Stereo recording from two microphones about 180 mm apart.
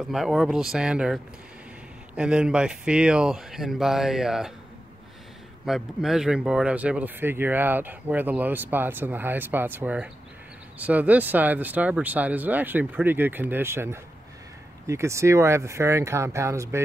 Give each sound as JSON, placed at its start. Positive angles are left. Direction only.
{"t": 0.0, "sound": "speech", "side_deg": 0}
{"t": 5.7, "sound": "speech", "side_deg": 0}